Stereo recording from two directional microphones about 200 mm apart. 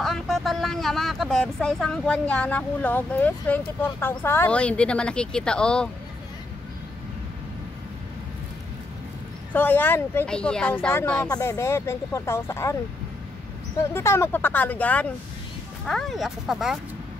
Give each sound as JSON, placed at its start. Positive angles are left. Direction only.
{"t": 0.0, "sound": "speech", "side_deg": 0}
{"t": 9.5, "sound": "speech", "side_deg": 10}
{"t": 13.9, "sound": "speech", "side_deg": 10}